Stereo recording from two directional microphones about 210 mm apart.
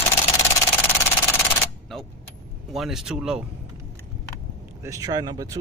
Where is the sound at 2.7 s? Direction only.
Centre (ahead or behind).